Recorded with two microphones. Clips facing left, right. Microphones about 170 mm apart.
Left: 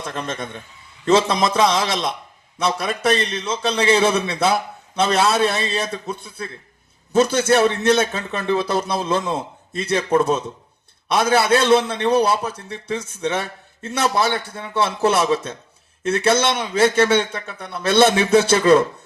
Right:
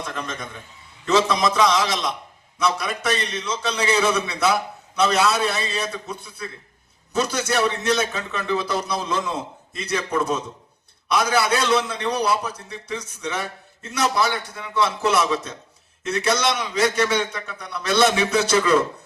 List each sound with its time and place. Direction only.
0.1 s a man's voice: 30° left (ahead or behind)